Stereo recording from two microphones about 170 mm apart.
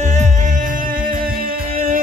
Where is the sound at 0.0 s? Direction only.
45° right (ahead or behind).